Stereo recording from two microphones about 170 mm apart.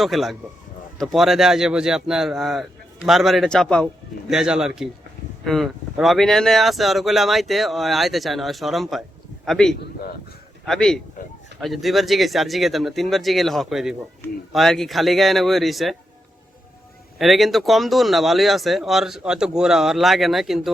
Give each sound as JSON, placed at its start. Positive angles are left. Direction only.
{"t": 0.0, "sound": "speech", "side_deg": 0}
{"t": 17.2, "sound": "speech", "side_deg": 0}